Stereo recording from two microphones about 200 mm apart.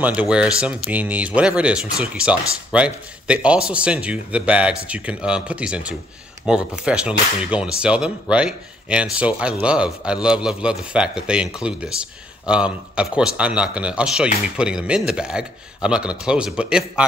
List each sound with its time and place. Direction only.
0.0 s speech: 5° right (ahead or behind)